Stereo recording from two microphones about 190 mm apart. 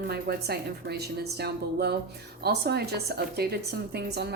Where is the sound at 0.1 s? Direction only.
55° right (ahead or behind).